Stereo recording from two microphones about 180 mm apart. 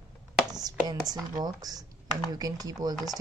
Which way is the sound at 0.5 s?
20° right (ahead or behind).